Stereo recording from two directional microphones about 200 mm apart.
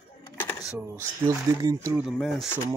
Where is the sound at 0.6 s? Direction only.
5° right (ahead or behind).